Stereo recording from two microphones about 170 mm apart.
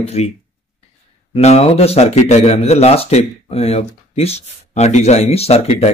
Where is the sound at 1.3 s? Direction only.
35° left (ahead or behind).